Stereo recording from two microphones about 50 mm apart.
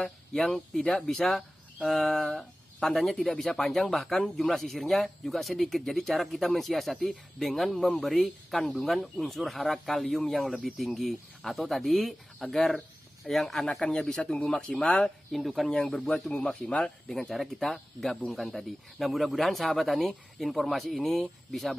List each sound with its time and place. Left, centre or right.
0.0 s speech: centre
15.0 s speech: centre
15.7 s speech: left
17.2 s speech: centre